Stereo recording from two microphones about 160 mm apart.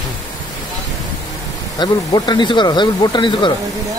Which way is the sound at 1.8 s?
25° left (ahead or behind).